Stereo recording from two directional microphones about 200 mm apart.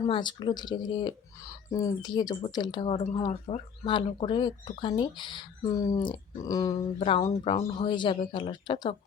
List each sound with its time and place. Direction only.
0.1 s speech: 20° left (ahead or behind)